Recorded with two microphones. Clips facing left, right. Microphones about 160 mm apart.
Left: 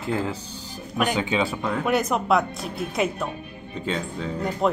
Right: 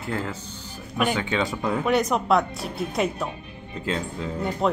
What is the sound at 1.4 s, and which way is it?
Speech, 5° left (ahead or behind).